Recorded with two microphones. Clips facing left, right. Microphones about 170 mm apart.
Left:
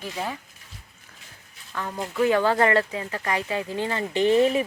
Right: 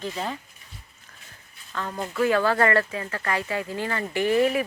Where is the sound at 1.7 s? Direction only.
10° left (ahead or behind).